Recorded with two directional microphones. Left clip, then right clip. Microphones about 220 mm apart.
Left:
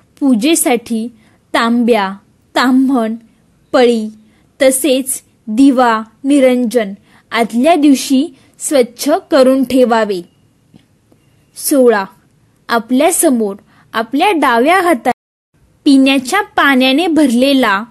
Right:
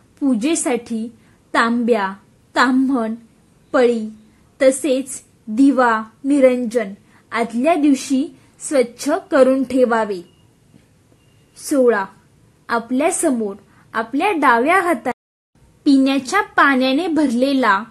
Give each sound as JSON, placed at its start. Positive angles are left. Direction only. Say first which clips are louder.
{"t": 0.1, "sound": "a woman's voice", "louder": "left 7 dB", "side_deg": 35}
{"t": 11.5, "sound": "a woman's voice", "louder": "left 5 dB", "side_deg": 35}